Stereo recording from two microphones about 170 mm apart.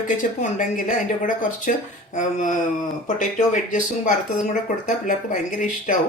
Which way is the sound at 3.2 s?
50° left (ahead or behind).